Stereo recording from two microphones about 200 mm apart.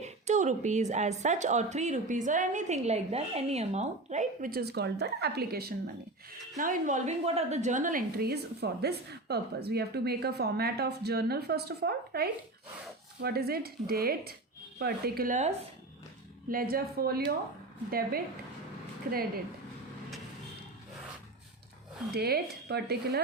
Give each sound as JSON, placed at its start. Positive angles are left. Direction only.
{"t": 0.0, "sound": "a woman's voice", "side_deg": -35}
{"t": 6.6, "sound": "a woman's voice", "side_deg": -40}
{"t": 22.1, "sound": "a woman's voice", "side_deg": -55}